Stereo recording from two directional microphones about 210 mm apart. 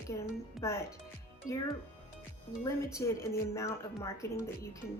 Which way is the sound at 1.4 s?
40° left (ahead or behind).